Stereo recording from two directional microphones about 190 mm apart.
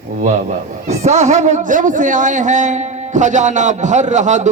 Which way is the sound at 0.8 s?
35° right (ahead or behind).